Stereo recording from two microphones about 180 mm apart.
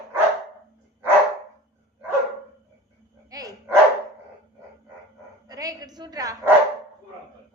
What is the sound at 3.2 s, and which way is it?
Dog, 20° right (ahead or behind).